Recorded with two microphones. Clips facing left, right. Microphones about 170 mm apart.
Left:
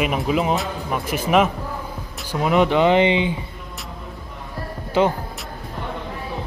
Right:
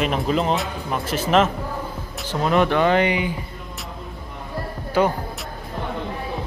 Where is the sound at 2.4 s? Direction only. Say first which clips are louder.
Left 2 dB; 15° left (ahead or behind).